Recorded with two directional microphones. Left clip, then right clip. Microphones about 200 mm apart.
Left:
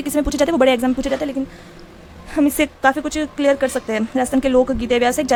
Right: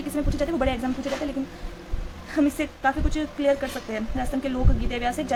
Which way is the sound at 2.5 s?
50° left (ahead or behind).